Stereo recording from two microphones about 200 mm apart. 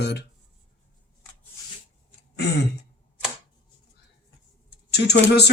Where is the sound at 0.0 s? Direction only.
60° left (ahead or behind).